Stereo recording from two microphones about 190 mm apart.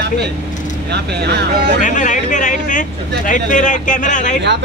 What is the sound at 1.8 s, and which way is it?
Speech, 40° left (ahead or behind).